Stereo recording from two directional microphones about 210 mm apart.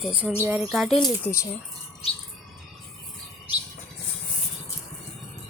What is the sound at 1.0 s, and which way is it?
Speech, 10° left (ahead or behind).